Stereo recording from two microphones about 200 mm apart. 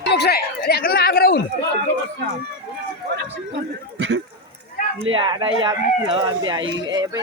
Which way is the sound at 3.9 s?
65° right (ahead or behind).